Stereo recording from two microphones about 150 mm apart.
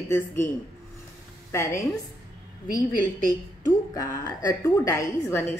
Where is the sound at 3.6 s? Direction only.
25° left (ahead or behind).